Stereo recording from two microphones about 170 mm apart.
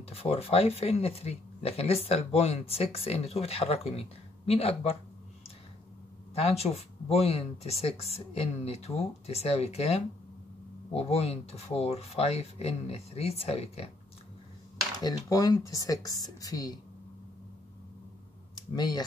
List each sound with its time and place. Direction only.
0.1 s speech: 35° left (ahead or behind)
6.3 s speech: 35° left (ahead or behind)
15.0 s speech: 20° left (ahead or behind)
18.5 s speech: 25° left (ahead or behind)